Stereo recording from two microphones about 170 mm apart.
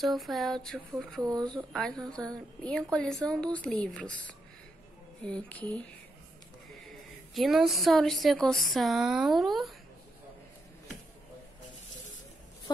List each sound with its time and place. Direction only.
0.0 s a woman's voice: centre (ahead or behind)
7.3 s speech: centre (ahead or behind)